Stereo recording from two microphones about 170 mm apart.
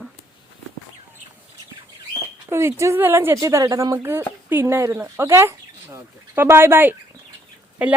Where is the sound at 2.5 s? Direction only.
15° right (ahead or behind).